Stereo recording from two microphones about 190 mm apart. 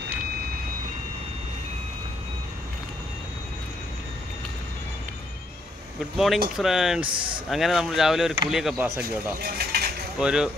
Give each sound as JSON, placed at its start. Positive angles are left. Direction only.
{"t": 6.1, "sound": "speech", "side_deg": 0}
{"t": 9.4, "sound": "mechanisms", "side_deg": -55}
{"t": 10.1, "sound": "speech", "side_deg": -5}